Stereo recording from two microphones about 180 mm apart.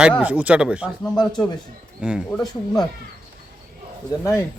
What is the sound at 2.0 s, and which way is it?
Speech, 5° right (ahead or behind).